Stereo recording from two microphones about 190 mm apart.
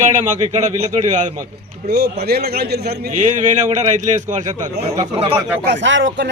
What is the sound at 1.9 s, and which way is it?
A man's voice, 55° right (ahead or behind).